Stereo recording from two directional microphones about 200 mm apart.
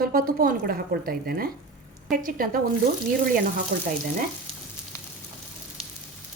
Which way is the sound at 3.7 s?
45° right (ahead or behind).